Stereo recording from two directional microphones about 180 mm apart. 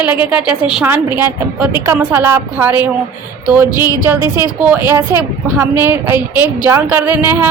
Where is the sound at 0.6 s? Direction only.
5° right (ahead or behind).